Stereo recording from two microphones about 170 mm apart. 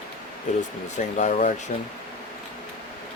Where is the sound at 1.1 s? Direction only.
45° left (ahead or behind).